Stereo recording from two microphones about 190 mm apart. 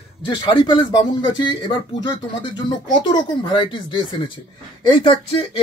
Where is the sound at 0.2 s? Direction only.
25° left (ahead or behind).